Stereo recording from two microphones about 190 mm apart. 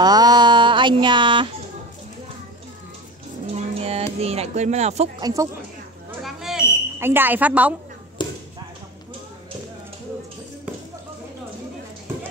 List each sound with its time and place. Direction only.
0.0 s a sound: 20° right (ahead or behind)
3.5 s music: 30° right (ahead or behind)
5.2 s a woman's voice: 15° right (ahead or behind)
6.2 s fire alarm: centre (ahead or behind)
7.0 s a woman's voice: 10° right (ahead or behind)
8.2 s a sound: 25° left (ahead or behind)